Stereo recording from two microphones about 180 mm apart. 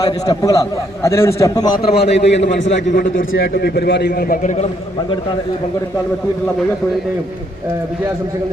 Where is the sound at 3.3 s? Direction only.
70° left (ahead or behind); by 4.6 s 45° left (ahead or behind).